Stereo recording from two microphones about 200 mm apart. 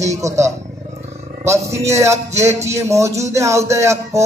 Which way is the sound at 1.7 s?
15° right (ahead or behind).